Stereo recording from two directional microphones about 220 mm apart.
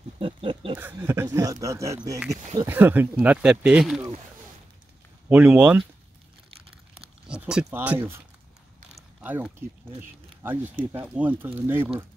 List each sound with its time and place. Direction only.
0.2 s a sound: 25° right (ahead or behind)
0.7 s speech: 10° right (ahead or behind)
5.3 s speech: 5° right (ahead or behind)
7.2 s speech: 5° right (ahead or behind)
8.9 s mechanisms: 5° right (ahead or behind)
9.9 s speech: 10° right (ahead or behind)
11.8 s speech: 25° right (ahead or behind)